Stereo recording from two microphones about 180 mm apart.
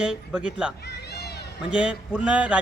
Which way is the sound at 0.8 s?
65° left (ahead or behind).